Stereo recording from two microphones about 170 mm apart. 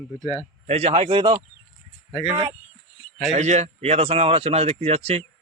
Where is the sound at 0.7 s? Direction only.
35° right (ahead or behind).